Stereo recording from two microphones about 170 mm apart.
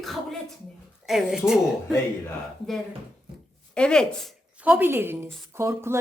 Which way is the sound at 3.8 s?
5° left (ahead or behind).